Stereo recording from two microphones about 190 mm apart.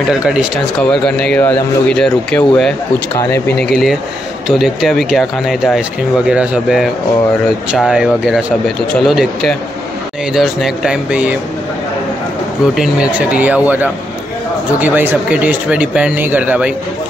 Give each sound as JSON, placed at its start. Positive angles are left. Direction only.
{"t": 0.1, "sound": "speech", "side_deg": -5}
{"t": 3.5, "sound": "speech", "side_deg": 55}
{"t": 4.5, "sound": "speech", "side_deg": 0}
{"t": 12.7, "sound": "speech", "side_deg": -5}